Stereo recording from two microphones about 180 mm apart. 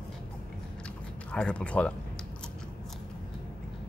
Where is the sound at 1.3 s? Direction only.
5° left (ahead or behind).